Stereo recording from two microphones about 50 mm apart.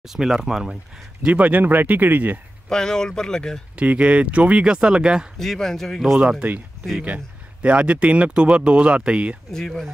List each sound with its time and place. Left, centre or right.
0.1 s speech: centre
1.3 s speech: right
2.7 s speech: centre
3.7 s speech: right
5.4 s speech: centre
7.6 s speech: right
9.5 s speech: centre